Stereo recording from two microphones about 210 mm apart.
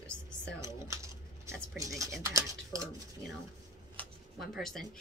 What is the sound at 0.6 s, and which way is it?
Speech, 15° right (ahead or behind).